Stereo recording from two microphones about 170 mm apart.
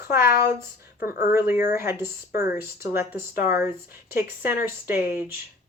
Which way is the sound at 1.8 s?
15° right (ahead or behind).